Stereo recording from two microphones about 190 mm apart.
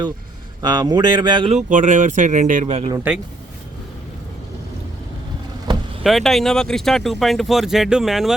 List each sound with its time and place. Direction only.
0.6 s speech: 20° right (ahead or behind)
1.5 s speech: 40° right (ahead or behind)
3.1 s speech: 10° right (ahead or behind)
6.0 s speech: centre (ahead or behind)